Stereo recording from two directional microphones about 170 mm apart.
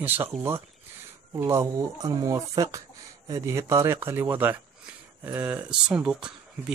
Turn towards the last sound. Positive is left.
turn(degrees=-5)  # may be behind; listen again after turning